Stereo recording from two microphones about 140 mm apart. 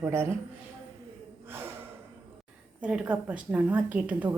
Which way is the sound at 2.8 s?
10° right (ahead or behind).